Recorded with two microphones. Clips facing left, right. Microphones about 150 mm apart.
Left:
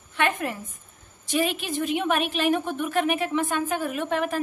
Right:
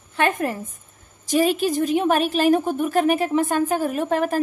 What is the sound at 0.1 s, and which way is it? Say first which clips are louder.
A woman's voice: right 4 dB; 40° right (ahead or behind).